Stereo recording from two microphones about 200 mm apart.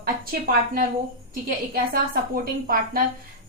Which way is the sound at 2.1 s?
45° right (ahead or behind).